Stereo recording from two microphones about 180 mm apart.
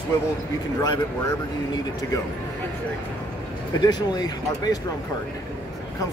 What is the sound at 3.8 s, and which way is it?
Speech, 20° left (ahead or behind).